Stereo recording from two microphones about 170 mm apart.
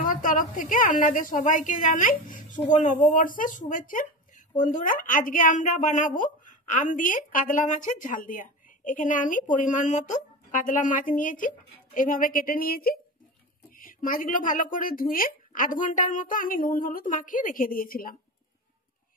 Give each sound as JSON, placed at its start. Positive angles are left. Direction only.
{"t": 0.0, "sound": "speech", "side_deg": 50}